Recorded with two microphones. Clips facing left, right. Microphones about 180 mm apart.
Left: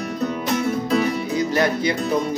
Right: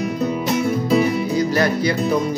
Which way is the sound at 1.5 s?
20° left (ahead or behind).